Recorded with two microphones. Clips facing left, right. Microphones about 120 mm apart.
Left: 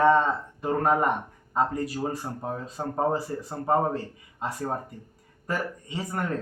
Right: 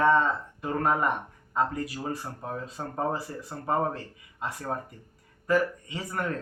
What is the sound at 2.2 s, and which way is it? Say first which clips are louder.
Speech: left 4 dB; 25° left (ahead or behind).